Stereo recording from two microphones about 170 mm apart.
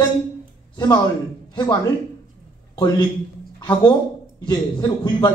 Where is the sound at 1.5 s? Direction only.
20° left (ahead or behind).